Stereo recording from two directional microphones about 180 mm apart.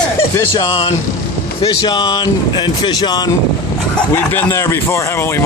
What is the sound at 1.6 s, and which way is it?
Speech, 25° left (ahead or behind).